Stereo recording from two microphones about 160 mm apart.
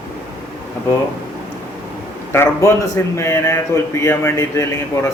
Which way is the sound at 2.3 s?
15° left (ahead or behind).